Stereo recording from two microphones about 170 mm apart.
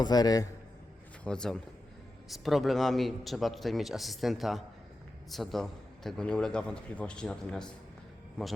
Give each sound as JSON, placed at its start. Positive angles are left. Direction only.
{"t": 0.0, "sound": "a man's voice", "side_deg": 25}
{"t": 1.2, "sound": "a man's voice", "side_deg": 5}